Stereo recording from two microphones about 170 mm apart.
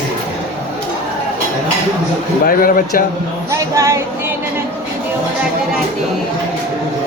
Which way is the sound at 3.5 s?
20° right (ahead or behind).